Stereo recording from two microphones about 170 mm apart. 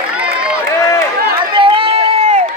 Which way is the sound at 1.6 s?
30° right (ahead or behind).